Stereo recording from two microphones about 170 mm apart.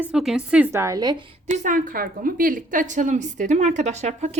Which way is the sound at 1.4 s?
50° right (ahead or behind).